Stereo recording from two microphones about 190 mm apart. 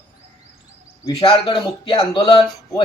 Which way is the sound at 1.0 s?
30° left (ahead or behind).